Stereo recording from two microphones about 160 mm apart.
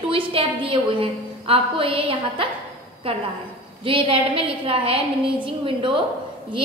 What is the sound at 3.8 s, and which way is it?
A woman's voice, 35° right (ahead or behind).